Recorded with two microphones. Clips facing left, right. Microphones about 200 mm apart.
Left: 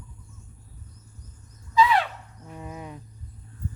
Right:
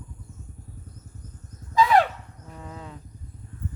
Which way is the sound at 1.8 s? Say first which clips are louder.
Right 2 dB; 45° right (ahead or behind).